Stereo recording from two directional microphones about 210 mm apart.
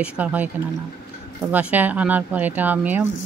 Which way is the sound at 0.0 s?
5° right (ahead or behind).